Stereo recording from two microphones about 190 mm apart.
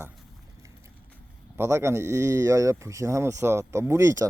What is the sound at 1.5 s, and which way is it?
Speech, 15° right (ahead or behind).